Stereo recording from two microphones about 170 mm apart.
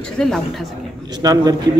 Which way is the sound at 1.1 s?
20° right (ahead or behind).